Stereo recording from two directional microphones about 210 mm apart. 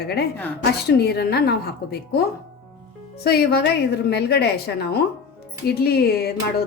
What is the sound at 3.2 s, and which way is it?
A woman's voice, 50° left (ahead or behind).